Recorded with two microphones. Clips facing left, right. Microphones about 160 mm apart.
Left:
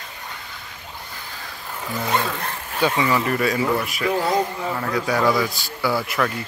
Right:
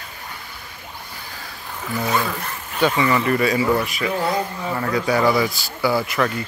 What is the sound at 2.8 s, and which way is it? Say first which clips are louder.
Speech: right 2 dB; 5° left (ahead or behind).